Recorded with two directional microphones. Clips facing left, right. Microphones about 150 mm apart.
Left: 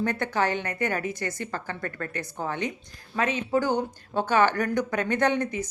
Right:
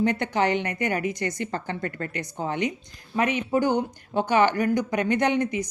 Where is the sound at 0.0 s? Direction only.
15° right (ahead or behind).